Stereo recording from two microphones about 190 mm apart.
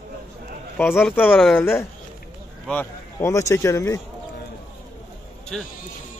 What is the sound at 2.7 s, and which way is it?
Speech, 10° left (ahead or behind).